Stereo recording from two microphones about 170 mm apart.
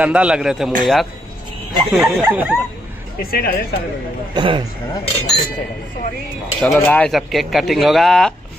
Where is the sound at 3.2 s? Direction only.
60° left (ahead or behind).